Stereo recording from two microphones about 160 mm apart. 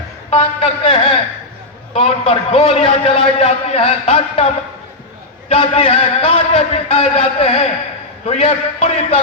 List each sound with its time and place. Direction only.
0.3 s a man's voice: 40° left (ahead or behind)